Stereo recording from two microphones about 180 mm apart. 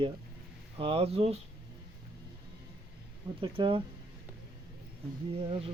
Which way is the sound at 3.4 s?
30° right (ahead or behind).